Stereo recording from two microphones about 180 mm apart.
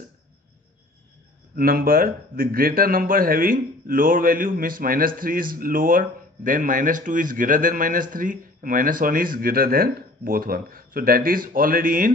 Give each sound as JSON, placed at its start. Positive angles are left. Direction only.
{"t": 1.6, "sound": "speech", "side_deg": -55}